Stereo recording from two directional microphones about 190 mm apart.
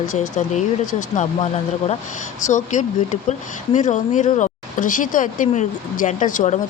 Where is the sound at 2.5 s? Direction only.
40° left (ahead or behind).